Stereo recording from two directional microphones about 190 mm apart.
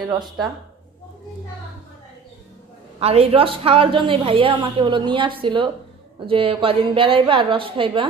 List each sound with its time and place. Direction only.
3.0 s a woman's voice: 30° right (ahead or behind)